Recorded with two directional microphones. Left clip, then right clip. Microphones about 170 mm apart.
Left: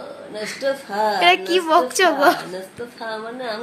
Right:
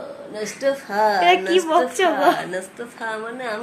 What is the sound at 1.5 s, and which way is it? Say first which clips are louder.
Speech: left 1 dB; 10° left (ahead or behind).